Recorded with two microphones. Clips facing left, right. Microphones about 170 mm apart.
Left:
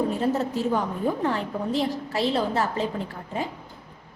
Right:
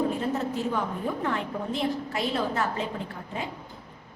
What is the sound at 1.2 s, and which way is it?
A woman's voice, 30° left (ahead or behind).